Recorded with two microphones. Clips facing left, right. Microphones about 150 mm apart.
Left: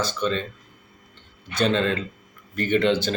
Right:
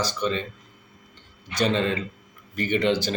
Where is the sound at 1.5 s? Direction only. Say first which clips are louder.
Left 1 dB; 10° right (ahead or behind).